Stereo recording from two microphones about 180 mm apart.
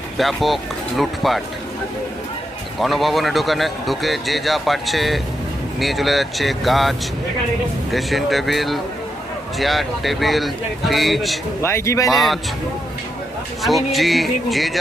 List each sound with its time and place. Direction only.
0.2 s speech: centre (ahead or behind)
2.7 s speech: centre (ahead or behind)
11.6 s speech: 15° left (ahead or behind)
12.1 s speech: centre (ahead or behind)
13.6 s speech: centre (ahead or behind)